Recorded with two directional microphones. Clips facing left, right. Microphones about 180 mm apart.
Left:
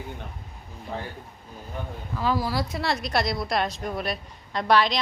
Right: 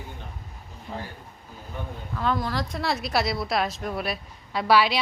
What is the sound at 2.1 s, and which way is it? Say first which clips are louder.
A woman's voice: left 1 dB; 5° left (ahead or behind).